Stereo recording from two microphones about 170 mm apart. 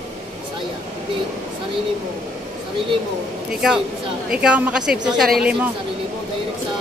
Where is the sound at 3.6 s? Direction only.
5° right (ahead or behind).